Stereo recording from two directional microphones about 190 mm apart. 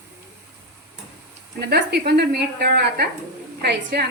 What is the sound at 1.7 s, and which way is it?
A woman's voice, 60° right (ahead or behind).